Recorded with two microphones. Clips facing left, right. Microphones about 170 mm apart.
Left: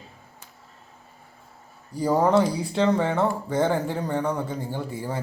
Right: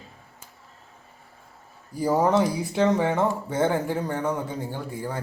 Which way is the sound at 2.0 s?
5° right (ahead or behind).